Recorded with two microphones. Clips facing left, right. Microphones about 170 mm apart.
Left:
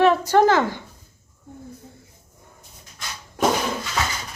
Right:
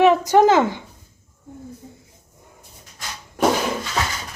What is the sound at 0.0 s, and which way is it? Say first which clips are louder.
Speech: right 2 dB; 15° right (ahead or behind).